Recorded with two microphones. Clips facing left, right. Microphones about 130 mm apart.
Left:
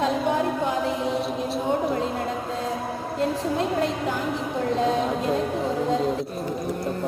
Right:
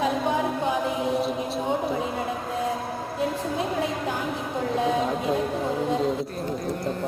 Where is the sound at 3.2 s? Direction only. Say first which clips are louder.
Left 3 dB; 90° left.